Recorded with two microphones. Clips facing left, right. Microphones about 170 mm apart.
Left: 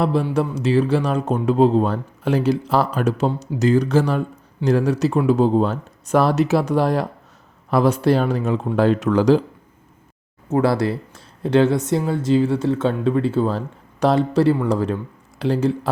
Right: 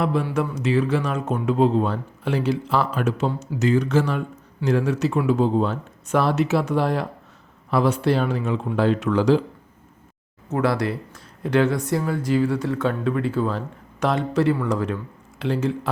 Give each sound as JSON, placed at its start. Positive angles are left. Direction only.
{"t": 0.0, "sound": "speech", "side_deg": 30}
{"t": 10.5, "sound": "speech", "side_deg": 30}